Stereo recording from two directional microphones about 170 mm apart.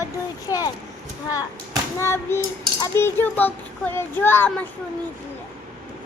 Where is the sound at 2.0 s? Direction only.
15° left (ahead or behind).